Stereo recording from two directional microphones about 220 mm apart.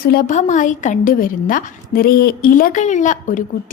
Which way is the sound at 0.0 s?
40° left (ahead or behind).